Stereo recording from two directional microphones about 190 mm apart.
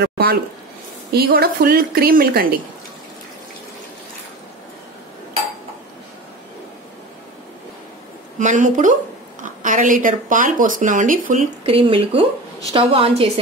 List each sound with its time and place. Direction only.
0.0 s speech: 55° right (ahead or behind)
8.4 s a woman's voice: 40° right (ahead or behind)
11.6 s a woman's voice: 30° right (ahead or behind)